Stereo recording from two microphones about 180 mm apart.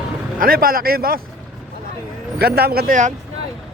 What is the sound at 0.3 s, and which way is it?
Speech, 55° right (ahead or behind).